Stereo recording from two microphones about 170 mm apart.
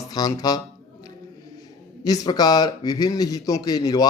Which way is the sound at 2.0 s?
20° left (ahead or behind).